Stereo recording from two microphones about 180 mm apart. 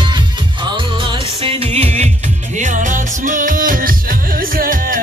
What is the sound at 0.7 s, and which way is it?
Music, 30° right (ahead or behind).